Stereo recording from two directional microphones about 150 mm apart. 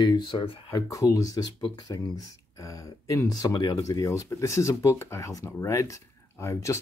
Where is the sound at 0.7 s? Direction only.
20° left (ahead or behind).